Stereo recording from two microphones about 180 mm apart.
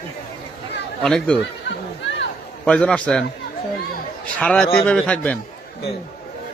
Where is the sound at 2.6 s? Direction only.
5° left (ahead or behind).